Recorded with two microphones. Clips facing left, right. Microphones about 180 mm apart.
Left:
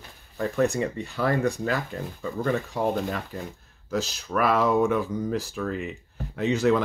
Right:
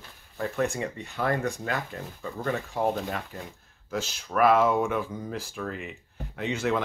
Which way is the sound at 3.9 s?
40° left (ahead or behind).